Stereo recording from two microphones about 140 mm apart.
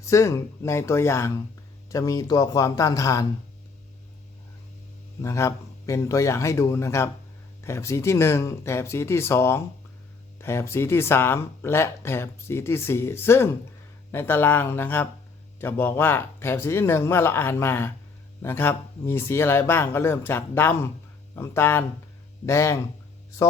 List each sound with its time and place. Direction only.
0.0 s speech: 20° left (ahead or behind)
5.2 s speech: 20° left (ahead or behind)